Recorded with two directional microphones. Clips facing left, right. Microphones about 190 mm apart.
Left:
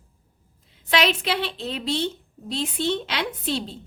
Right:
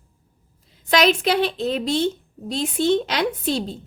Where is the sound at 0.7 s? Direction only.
40° right (ahead or behind).